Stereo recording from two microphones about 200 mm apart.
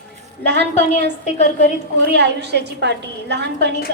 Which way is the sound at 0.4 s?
55° right (ahead or behind).